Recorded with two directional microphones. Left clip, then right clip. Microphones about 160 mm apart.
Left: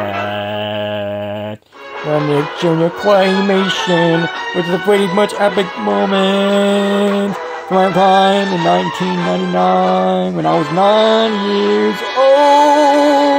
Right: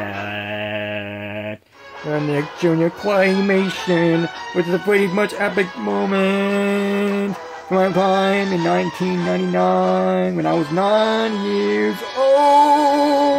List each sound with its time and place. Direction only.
2.0 s music: 45° left (ahead or behind)
10.0 s speech: 25° left (ahead or behind)
10.3 s music: 45° left (ahead or behind)